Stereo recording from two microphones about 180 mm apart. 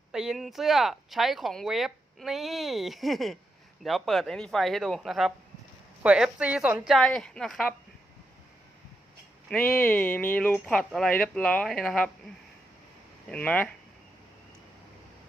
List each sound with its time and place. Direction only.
0.1 s speech: 5° right (ahead or behind)
9.5 s speech: 5° left (ahead or behind)
13.3 s speech: 5° left (ahead or behind)